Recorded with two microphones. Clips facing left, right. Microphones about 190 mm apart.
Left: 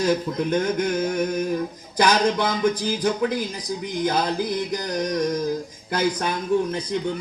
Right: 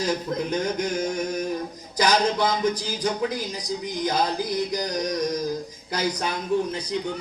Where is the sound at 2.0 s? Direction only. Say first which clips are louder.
Left 2 dB; 55° left (ahead or behind).